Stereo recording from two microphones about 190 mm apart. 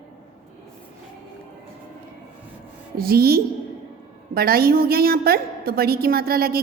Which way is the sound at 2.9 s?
55° right (ahead or behind).